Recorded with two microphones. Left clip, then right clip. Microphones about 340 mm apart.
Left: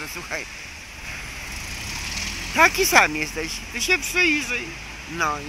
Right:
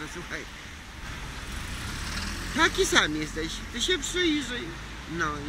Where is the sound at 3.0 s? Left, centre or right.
Left.